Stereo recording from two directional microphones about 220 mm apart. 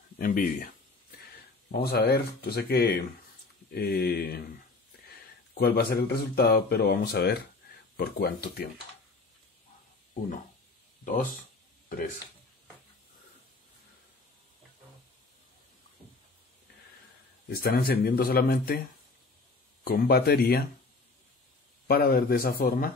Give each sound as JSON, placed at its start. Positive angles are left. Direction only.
{"t": 0.2, "sound": "speech", "side_deg": 40}
{"t": 1.7, "sound": "speech", "side_deg": 45}
{"t": 5.5, "sound": "speech", "side_deg": 45}
{"t": 17.5, "sound": "speech", "side_deg": 45}
{"t": 19.8, "sound": "speech", "side_deg": 45}
{"t": 21.8, "sound": "speech", "side_deg": 45}